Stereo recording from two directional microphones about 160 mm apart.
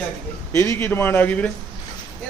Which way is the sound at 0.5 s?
15° left (ahead or behind).